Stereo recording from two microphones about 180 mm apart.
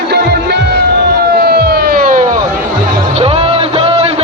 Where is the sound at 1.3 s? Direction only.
60° right (ahead or behind).